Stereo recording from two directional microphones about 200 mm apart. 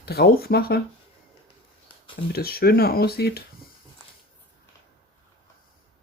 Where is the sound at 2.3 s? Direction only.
50° left (ahead or behind).